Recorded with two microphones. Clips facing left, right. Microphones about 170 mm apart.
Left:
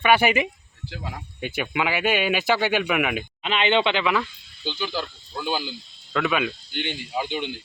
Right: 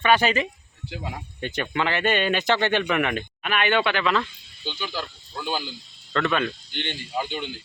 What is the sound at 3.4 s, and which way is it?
Speech, 20° left (ahead or behind).